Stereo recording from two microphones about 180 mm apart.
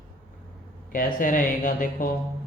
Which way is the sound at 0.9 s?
50° left (ahead or behind).